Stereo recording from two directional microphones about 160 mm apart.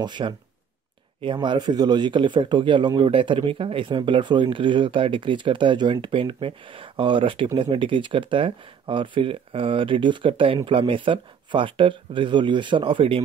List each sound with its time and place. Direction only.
0.0 s speech: 30° right (ahead or behind)